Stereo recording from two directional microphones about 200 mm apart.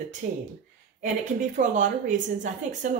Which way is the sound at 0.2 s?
45° right (ahead or behind).